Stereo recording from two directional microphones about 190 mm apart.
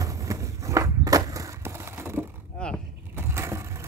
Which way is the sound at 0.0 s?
15° right (ahead or behind).